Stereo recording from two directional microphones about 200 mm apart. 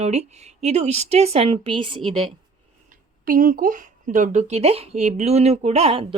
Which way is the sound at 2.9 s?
45° right (ahead or behind).